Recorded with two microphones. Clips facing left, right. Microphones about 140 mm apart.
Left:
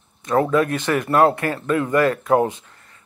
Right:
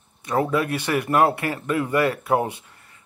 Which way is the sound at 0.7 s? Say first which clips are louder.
Left 2 dB; 15° right (ahead or behind).